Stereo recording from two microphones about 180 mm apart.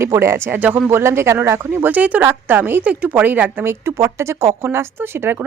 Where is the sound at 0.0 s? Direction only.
15° right (ahead or behind).